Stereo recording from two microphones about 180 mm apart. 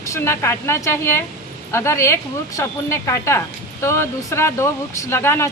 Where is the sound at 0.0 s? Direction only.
15° left (ahead or behind).